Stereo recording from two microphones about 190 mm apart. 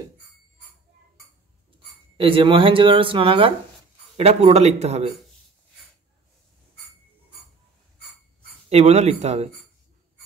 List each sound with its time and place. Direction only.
2.1 s speech: 30° right (ahead or behind)
8.6 s speech: 35° right (ahead or behind)